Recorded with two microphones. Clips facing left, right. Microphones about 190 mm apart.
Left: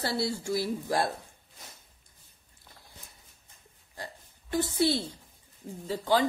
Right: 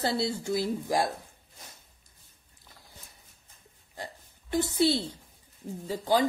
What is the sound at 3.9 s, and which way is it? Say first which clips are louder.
Oink: right 1 dB; 20° right (ahead or behind).